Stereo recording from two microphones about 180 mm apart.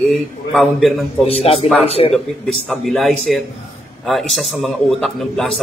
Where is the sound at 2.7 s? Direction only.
Centre (ahead or behind).